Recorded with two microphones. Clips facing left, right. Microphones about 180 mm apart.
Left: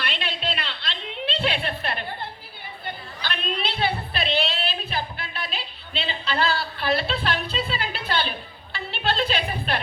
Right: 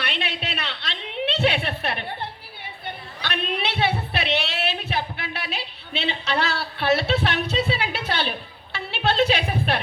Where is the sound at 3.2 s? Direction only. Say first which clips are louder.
Right 2 dB; 75° right (ahead or behind).